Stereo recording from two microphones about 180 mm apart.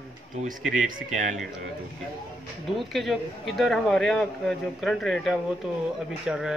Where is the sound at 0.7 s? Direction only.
50° right (ahead or behind).